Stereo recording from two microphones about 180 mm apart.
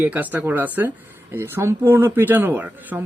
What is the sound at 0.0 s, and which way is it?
Speech, 10° right (ahead or behind).